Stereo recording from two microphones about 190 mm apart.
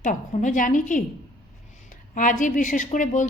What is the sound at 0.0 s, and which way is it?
A woman's voice, 40° left (ahead or behind).